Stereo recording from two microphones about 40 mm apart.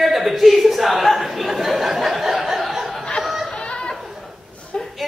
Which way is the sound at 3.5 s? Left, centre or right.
Left.